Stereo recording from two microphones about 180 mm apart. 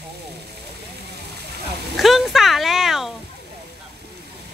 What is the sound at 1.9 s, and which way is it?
Speech, centre (ahead or behind).